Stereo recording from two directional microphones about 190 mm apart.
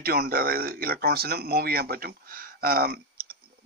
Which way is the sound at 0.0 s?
55° right (ahead or behind).